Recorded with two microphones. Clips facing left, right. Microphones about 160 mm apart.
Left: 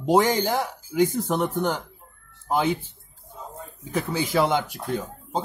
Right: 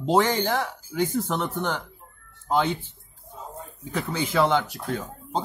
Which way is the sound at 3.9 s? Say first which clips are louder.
Left 2 dB; 10° left (ahead or behind).